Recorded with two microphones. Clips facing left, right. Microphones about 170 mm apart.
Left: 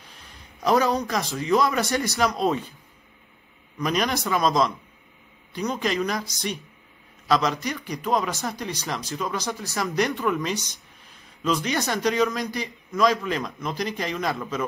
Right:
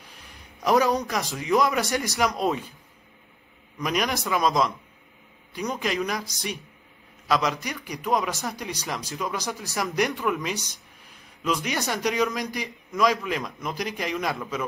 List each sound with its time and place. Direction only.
0.7 s a man's voice: 15° right (ahead or behind)
3.8 s a man's voice: 10° right (ahead or behind)
10.1 s speech: centre (ahead or behind)
11.4 s a man's voice: 15° right (ahead or behind)